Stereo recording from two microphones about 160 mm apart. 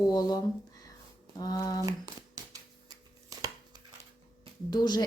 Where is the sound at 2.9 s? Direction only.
25° right (ahead or behind).